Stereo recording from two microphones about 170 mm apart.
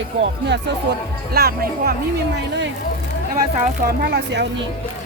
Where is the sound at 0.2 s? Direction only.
90° right; by 2.0 s 65° right (ahead or behind).